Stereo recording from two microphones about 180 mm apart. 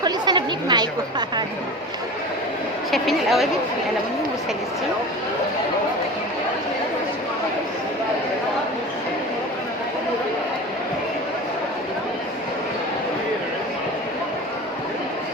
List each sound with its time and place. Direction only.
0.0 s chatter: 25° right (ahead or behind)
2.9 s a woman's voice: centre (ahead or behind)